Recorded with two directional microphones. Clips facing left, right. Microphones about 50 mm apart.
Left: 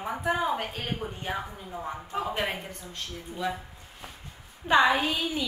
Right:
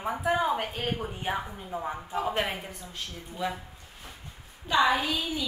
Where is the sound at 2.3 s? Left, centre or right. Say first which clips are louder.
Right 1 dB; centre.